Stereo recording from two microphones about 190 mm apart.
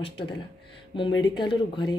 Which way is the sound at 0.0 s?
25° left (ahead or behind).